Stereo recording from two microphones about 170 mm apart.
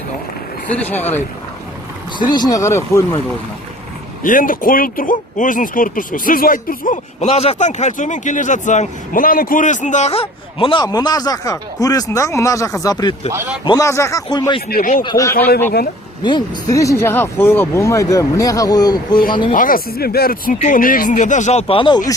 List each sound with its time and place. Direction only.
0.8 s speech: 10° left (ahead or behind)
2.1 s speech: 25° left (ahead or behind)
4.2 s speech: 55° left (ahead or behind); by 13.1 s 20° left (ahead or behind)
13.3 s a man's voice: 10° right (ahead or behind)
13.7 s speech: 20° left (ahead or behind)
14.7 s speech: 55° left (ahead or behind)
15.0 s speech: 20° left (ahead or behind)
19.1 s speech: 55° left (ahead or behind); by 22.1 s 25° left (ahead or behind)